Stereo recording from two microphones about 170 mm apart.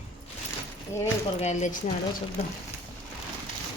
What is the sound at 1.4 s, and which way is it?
Speech, 45° left (ahead or behind).